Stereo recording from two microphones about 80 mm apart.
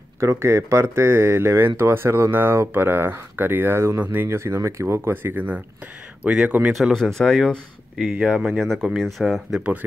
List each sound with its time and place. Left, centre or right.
0.2 s speech: right; by 6.7 s centre
6.7 s speech: centre
8.1 s speech: centre
9.6 s speech: centre